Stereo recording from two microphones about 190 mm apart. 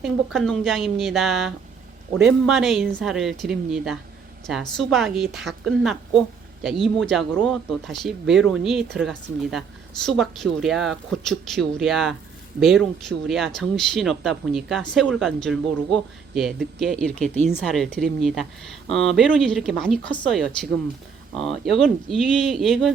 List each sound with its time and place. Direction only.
0.0 s speech: centre (ahead or behind)